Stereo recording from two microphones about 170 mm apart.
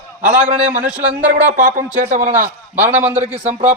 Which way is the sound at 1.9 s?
45° right (ahead or behind).